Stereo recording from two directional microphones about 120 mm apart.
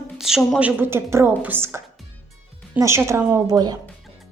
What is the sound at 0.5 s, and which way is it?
A woman's voice, 15° right (ahead or behind).